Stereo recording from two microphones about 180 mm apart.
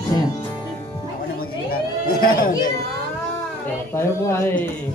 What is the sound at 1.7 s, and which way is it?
Chatter, 55° left (ahead or behind).